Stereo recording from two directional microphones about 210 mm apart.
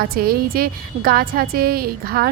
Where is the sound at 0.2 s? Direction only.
45° right (ahead or behind).